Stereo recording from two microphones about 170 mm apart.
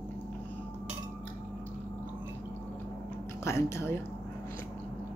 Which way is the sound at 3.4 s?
15° left (ahead or behind).